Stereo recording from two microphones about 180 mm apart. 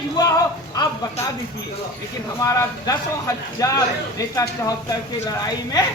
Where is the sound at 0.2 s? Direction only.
20° left (ahead or behind).